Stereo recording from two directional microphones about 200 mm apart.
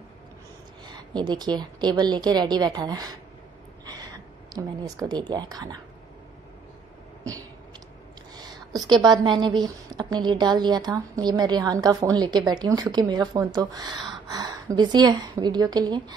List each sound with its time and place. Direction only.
0.8 s a woman's voice: 20° right (ahead or behind)
3.8 s a sound: 20° right (ahead or behind)
5.0 s a woman's voice: 20° right (ahead or behind)
8.4 s a woman's voice: 20° right (ahead or behind)